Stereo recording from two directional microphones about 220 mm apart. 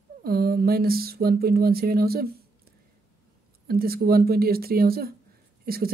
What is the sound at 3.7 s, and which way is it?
Speech, 45° right (ahead or behind).